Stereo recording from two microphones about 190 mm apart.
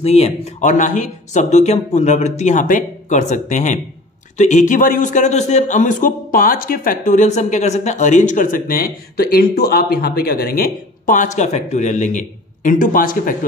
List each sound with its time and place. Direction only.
0.0 s speech: 35° left (ahead or behind)